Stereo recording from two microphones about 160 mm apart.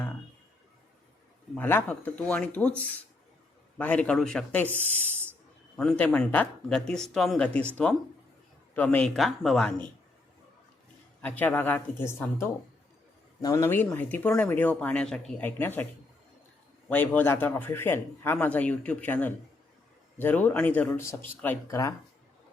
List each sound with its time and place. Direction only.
1.5 s speech: 10° left (ahead or behind)
11.2 s speech: 10° left (ahead or behind)
16.9 s speech: 10° left (ahead or behind)